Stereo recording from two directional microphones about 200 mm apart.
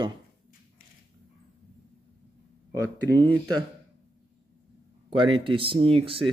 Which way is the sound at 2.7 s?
15° right (ahead or behind).